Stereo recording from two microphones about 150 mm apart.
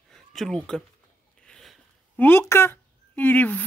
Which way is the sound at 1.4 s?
5° left (ahead or behind).